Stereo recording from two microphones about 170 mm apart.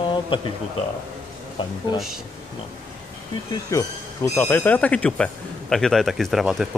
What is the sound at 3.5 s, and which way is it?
Speech, 20° left (ahead or behind).